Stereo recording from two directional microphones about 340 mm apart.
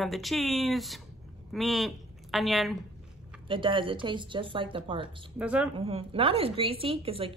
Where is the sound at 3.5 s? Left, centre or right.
Centre.